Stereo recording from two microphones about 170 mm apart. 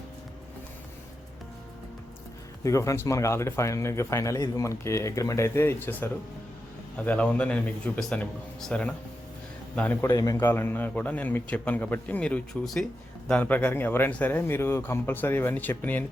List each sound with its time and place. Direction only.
2.6 s speech: 15° left (ahead or behind)